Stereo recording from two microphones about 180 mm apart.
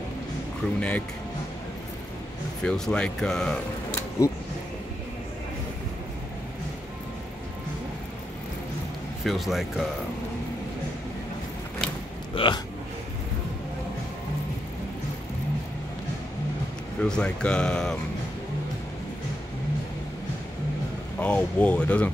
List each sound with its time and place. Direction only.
0.7 s speech: 5° left (ahead or behind)
2.6 s speech: 5° left (ahead or behind)
9.2 s speech: centre (ahead or behind)
12.4 s speech: 30° left (ahead or behind)
17.0 s speech: 5° left (ahead or behind)
21.2 s speech: 5° left (ahead or behind)